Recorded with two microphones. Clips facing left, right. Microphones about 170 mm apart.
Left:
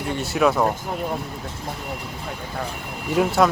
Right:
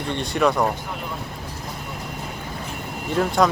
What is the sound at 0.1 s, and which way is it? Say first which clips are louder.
Speech: left 1 dB; 5° left (ahead or behind).